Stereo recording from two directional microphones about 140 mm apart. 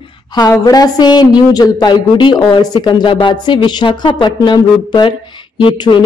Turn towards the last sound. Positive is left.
turn(degrees=35)  # may be behind; listen again after turning